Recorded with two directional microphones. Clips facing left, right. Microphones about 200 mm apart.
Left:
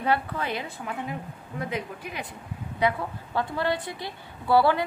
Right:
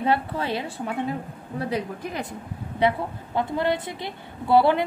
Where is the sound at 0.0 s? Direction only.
25° right (ahead or behind).